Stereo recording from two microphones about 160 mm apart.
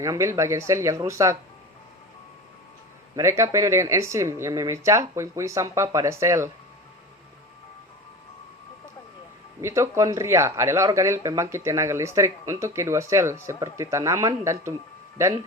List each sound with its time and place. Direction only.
0.0 s speech: 20° right (ahead or behind)
3.2 s speech: 20° right (ahead or behind)
9.6 s speech: 15° right (ahead or behind)